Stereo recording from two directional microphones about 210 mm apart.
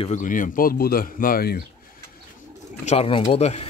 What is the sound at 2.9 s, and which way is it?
Speech, 25° left (ahead or behind).